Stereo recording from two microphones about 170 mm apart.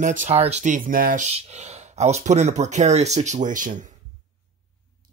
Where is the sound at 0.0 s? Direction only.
45° right (ahead or behind).